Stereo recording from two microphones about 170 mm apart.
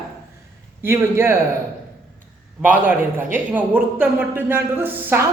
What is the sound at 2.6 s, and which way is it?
A woman's voice, 10° right (ahead or behind).